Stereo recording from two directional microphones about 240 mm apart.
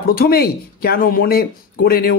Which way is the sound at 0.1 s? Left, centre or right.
Left.